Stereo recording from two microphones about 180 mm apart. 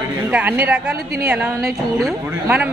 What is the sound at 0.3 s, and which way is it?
A woman's voice, 10° right (ahead or behind).